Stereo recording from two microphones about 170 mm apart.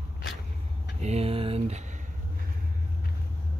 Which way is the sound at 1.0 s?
40° right (ahead or behind).